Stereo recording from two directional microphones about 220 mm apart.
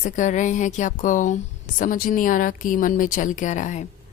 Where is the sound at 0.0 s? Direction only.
35° left (ahead or behind).